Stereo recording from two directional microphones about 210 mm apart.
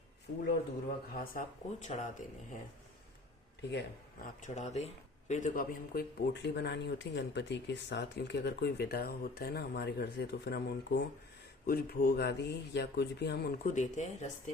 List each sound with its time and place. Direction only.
1.1 s speech: 45° left (ahead or behind)
3.6 s speech: 55° left (ahead or behind)
4.4 s speech: 35° left (ahead or behind)